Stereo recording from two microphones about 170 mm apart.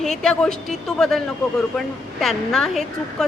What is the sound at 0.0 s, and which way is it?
A woman's voice, 5° left (ahead or behind).